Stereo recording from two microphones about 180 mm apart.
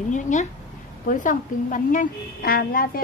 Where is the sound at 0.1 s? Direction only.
45° left (ahead or behind).